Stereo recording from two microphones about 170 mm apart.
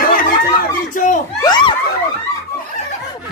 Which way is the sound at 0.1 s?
55° left (ahead or behind).